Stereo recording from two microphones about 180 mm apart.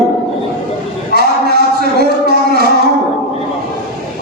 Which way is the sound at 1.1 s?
60° right (ahead or behind).